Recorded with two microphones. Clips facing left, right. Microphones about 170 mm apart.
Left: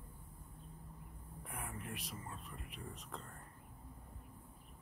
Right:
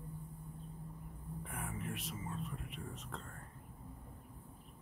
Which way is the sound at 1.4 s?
Centre (ahead or behind).